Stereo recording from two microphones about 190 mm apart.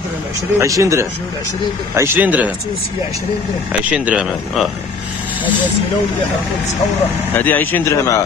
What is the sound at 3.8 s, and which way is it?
Speech, 5° right (ahead or behind).